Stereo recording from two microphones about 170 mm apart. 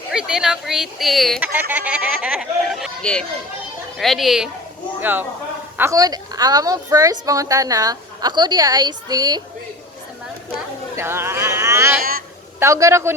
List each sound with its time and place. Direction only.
0.1 s speech: 5° right (ahead or behind)
4.9 s a woman's voice: 10° right (ahead or behind)
10.9 s a man's voice: 15° right (ahead or behind)